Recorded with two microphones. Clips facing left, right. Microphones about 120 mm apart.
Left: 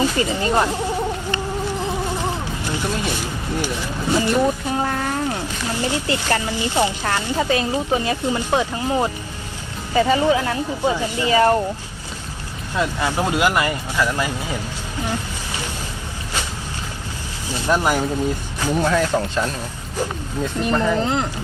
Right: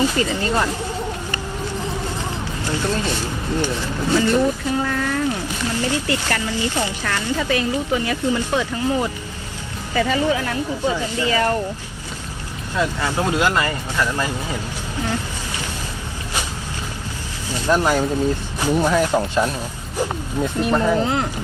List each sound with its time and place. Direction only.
0.0 s speech: 15° left (ahead or behind)
2.6 s speech: 15° left (ahead or behind)
4.8 s a sound: 35° left (ahead or behind)
5.7 s speech: 20° left (ahead or behind)
10.9 s speech: 15° left (ahead or behind)
12.7 s speech: 15° left (ahead or behind)
17.5 s speech: 15° left (ahead or behind)
18.8 s speech: 15° right (ahead or behind)